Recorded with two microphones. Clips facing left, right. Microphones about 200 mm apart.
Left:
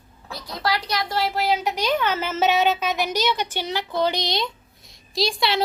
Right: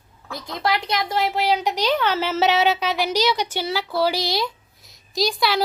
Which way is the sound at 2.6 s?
10° right (ahead or behind).